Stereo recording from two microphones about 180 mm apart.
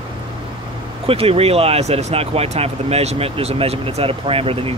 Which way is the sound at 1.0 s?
35° right (ahead or behind).